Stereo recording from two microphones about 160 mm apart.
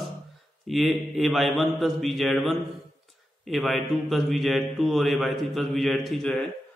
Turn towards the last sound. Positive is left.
turn(degrees=0)  # may be behind; listen again after turning